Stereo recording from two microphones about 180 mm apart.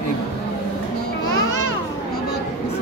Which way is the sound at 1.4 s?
90° left.